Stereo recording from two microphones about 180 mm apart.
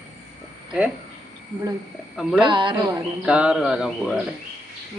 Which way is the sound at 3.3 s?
5° right (ahead or behind).